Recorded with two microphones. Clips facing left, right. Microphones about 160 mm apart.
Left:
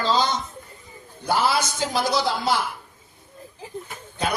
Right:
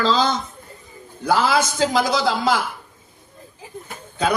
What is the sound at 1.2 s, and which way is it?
A man's voice, 90° right.